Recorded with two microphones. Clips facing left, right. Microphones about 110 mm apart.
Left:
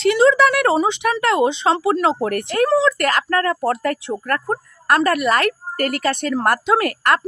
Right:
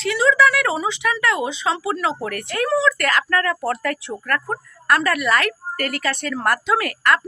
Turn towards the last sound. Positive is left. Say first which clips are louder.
# left 2 dB
turn(degrees=40)  # may be behind; listen again after turning